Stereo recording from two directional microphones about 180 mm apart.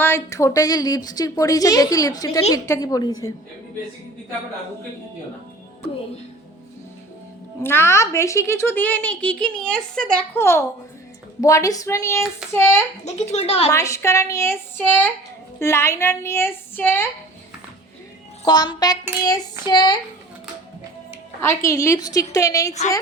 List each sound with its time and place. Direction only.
0.0 s a woman's voice: 15° left (ahead or behind)
7.6 s speech: 15° left (ahead or behind)
13.1 s a woman's voice: 35° left (ahead or behind)
13.7 s speech: 15° left (ahead or behind)
18.4 s a woman's voice: 25° left (ahead or behind)
21.4 s speech: 15° left (ahead or behind)